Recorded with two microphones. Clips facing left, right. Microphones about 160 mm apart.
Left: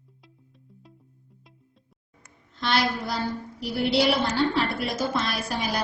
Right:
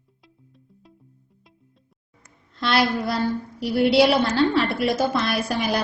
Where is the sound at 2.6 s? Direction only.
65° right (ahead or behind).